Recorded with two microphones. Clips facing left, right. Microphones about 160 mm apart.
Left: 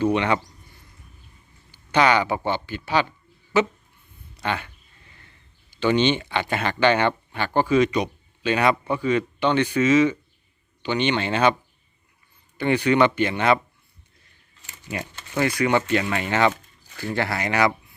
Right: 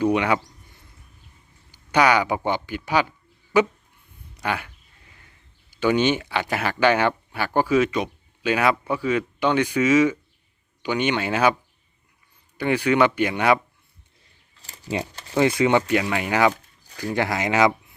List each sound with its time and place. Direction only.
0.0 s speech: 10° right (ahead or behind)
1.7 s speech: 10° right (ahead or behind)
4.4 s a sound: 10° right (ahead or behind)
5.7 s speech: 10° right (ahead or behind)
12.5 s speech: 5° right (ahead or behind)
14.6 s a sound: 35° right (ahead or behind)
15.4 s speech: 20° right (ahead or behind)